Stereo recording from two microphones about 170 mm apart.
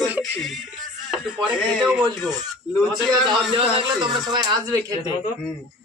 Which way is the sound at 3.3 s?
30° right (ahead or behind).